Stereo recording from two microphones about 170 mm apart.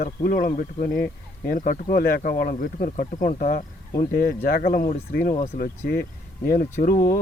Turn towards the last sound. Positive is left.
turn(degrees=55)  # may be behind; listen again after turning